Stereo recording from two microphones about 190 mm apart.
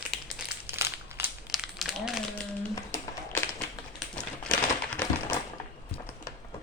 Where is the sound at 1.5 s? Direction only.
Centre (ahead or behind).